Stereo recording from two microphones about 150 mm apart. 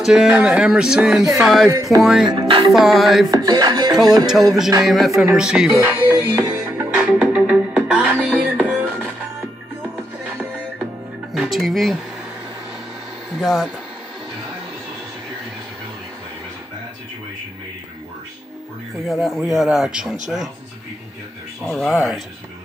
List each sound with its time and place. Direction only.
0.0 s speech: 5° right (ahead or behind)
1.7 s music: 25° right (ahead or behind)
2.0 s speech: centre (ahead or behind)
2.2 s music: 30° right (ahead or behind)
2.7 s speech: centre (ahead or behind)
3.3 s music: 25° right (ahead or behind)
4.3 s speech: centre (ahead or behind)
5.8 s music: 15° right (ahead or behind)
11.3 s speech: centre (ahead or behind)
13.4 s speech: centre (ahead or behind)
19.1 s speech: centre (ahead or behind)
21.6 s speech: centre (ahead or behind)